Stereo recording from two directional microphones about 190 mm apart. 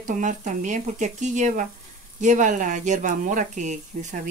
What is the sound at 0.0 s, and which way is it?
Speech, 40° right (ahead or behind).